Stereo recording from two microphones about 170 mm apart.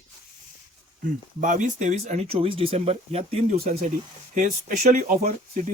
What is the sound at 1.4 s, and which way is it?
Speech, 45° right (ahead or behind).